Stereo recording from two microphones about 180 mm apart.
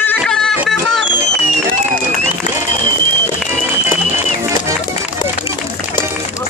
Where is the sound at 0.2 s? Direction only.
5° left (ahead or behind).